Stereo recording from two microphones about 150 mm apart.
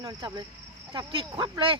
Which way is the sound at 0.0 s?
25° right (ahead or behind).